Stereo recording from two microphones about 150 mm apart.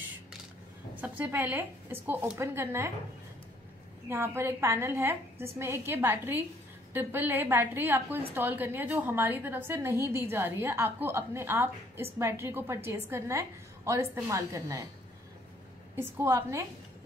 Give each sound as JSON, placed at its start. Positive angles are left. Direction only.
{"t": 1.0, "sound": "a woman's voice", "side_deg": -10}
{"t": 4.1, "sound": "a woman's voice", "side_deg": -15}
{"t": 16.0, "sound": "a woman's voice", "side_deg": -20}